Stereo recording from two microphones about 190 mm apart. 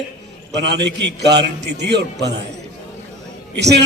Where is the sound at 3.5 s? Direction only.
60° right (ahead or behind).